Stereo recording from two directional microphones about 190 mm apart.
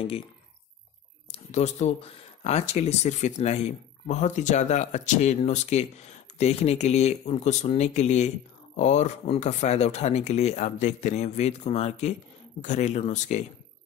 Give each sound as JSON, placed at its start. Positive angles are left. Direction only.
{"t": 1.3, "sound": "speech", "side_deg": 35}